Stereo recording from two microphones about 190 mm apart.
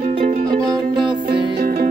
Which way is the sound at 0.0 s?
35° right (ahead or behind).